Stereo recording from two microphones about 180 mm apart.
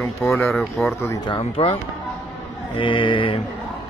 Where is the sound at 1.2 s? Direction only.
30° left (ahead or behind).